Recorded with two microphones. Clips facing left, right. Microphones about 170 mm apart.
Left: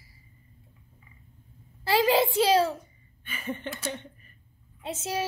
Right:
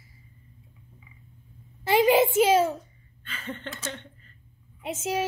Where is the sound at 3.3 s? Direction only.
10° left (ahead or behind).